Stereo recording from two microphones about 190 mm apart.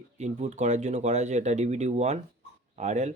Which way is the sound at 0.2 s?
40° right (ahead or behind).